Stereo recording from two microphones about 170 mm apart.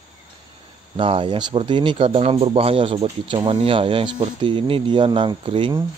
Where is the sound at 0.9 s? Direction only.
30° right (ahead or behind).